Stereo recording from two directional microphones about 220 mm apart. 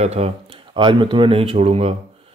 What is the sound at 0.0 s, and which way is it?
Speech, 30° right (ahead or behind).